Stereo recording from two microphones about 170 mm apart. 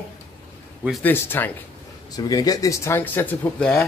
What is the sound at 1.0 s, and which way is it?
Speech, 10° left (ahead or behind).